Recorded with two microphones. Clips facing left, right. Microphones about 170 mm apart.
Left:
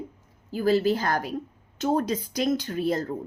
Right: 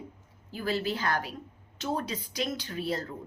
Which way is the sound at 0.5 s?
40° left (ahead or behind).